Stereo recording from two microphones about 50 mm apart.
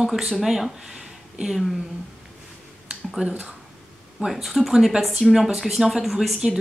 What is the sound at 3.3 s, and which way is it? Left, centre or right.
Speech, right.